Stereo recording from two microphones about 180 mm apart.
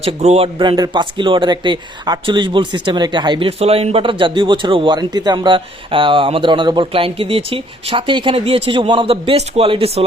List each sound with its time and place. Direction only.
0.0 s speech: 35° right (ahead or behind)